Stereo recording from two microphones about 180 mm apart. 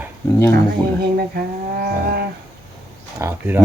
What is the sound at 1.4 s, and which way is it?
Wild animals, 55° right (ahead or behind).